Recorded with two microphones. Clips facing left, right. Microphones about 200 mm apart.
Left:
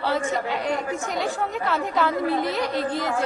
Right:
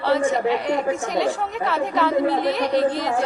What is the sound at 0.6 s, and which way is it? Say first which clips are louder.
Speech: right 4 dB; 20° right (ahead or behind).